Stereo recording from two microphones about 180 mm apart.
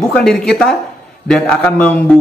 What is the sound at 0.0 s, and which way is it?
Speech, centre (ahead or behind).